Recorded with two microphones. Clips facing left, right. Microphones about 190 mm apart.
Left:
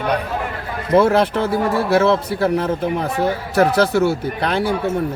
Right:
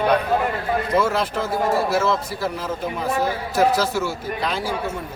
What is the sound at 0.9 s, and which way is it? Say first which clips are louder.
Speech: left 9 dB; 60° left (ahead or behind).